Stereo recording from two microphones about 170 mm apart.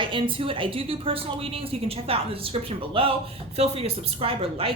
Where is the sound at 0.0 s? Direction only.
30° right (ahead or behind).